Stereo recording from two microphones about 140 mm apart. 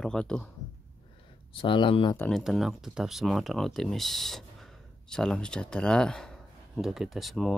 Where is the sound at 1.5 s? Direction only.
35° left (ahead or behind).